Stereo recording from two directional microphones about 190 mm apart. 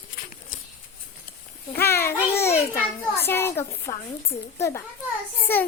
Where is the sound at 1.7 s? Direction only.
10° left (ahead or behind).